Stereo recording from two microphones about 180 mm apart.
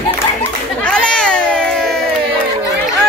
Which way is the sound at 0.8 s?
5° left (ahead or behind).